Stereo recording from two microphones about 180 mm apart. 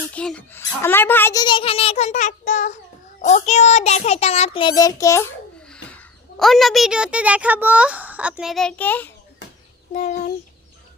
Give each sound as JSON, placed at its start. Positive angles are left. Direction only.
{"t": 0.1, "sound": "a child's voice", "side_deg": 5}
{"t": 4.7, "sound": "a child's voice", "side_deg": 20}
{"t": 5.6, "sound": "a woman's voice", "side_deg": 5}
{"t": 9.4, "sound": "a sound", "side_deg": 80}
{"t": 9.9, "sound": "a child's voice", "side_deg": 40}